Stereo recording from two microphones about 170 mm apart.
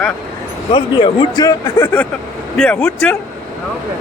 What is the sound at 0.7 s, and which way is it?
Speech, 25° left (ahead or behind).